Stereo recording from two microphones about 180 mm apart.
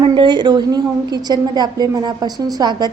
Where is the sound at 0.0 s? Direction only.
25° right (ahead or behind).